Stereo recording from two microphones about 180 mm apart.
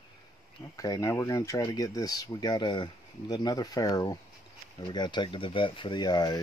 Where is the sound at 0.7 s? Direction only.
20° left (ahead or behind).